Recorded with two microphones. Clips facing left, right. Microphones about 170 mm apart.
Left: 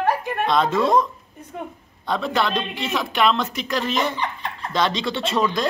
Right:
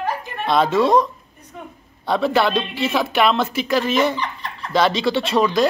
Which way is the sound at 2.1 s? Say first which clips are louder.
Right 4 dB; 5° right (ahead or behind).